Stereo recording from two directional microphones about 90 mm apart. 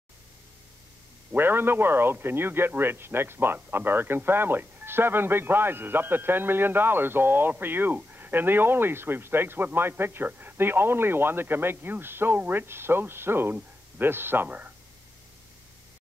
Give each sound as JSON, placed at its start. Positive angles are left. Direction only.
{"t": 1.3, "sound": "a man's voice", "side_deg": -25}